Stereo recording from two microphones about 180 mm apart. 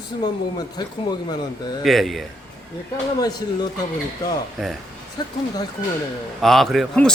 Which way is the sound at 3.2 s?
20° left (ahead or behind).